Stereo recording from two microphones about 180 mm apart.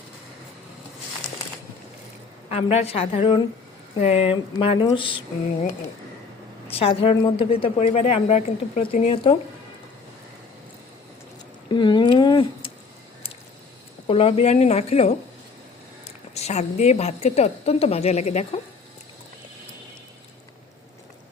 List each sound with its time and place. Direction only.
2.5 s a woman's voice: 35° left (ahead or behind)
6.7 s a woman's voice: 30° left (ahead or behind)
9.0 s speech: 30° left (ahead or behind)
11.7 s a sound: 25° left (ahead or behind)
14.1 s a woman's voice: 35° left (ahead or behind)
16.3 s a woman's voice: 40° left (ahead or behind)